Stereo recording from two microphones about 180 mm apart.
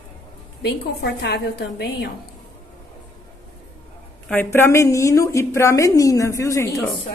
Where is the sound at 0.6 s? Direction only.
65° left (ahead or behind).